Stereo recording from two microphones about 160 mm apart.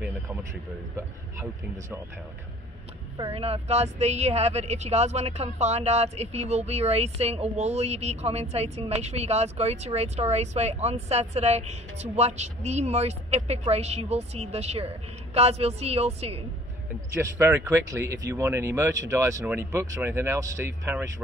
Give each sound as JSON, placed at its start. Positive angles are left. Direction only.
{"t": 3.2, "sound": "a woman's voice", "side_deg": -35}
{"t": 17.1, "sound": "speech", "side_deg": -15}